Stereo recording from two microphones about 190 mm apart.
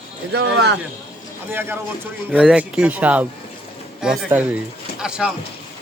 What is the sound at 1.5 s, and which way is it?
Speech, 10° right (ahead or behind).